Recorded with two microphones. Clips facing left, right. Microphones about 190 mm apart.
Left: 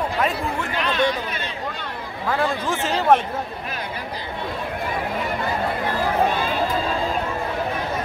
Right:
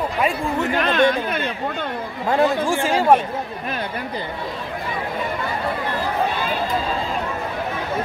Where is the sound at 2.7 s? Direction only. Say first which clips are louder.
Right 2 dB; 10° right (ahead or behind).